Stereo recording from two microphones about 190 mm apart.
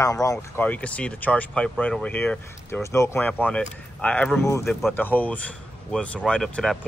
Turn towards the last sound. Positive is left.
turn(degrees=0)  # may be behind; listen again after turning